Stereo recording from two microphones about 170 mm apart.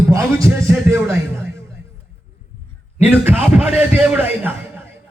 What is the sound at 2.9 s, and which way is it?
A man's voice, 10° right (ahead or behind).